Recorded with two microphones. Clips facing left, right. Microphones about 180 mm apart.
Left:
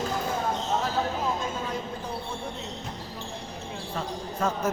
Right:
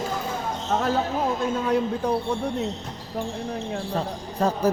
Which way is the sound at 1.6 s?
70° right (ahead or behind).